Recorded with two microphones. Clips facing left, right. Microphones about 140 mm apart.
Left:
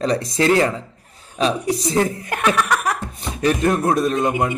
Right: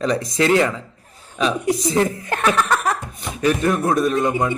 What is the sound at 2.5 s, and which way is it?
Speech, 15° left (ahead or behind).